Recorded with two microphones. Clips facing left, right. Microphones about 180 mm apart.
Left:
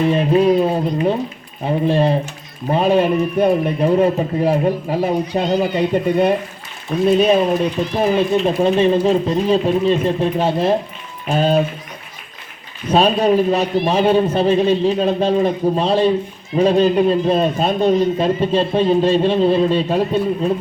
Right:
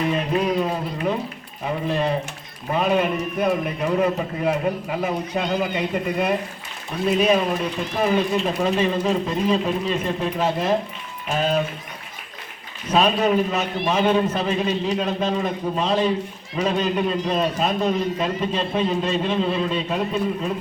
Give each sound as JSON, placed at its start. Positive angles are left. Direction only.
{"t": 0.0, "sound": "a man's voice", "side_deg": 30}
{"t": 12.9, "sound": "a man's voice", "side_deg": 30}